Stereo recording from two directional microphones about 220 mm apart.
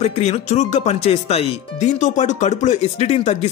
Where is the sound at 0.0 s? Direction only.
30° left (ahead or behind).